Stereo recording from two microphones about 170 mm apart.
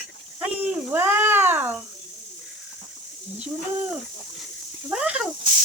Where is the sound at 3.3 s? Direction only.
5° right (ahead or behind).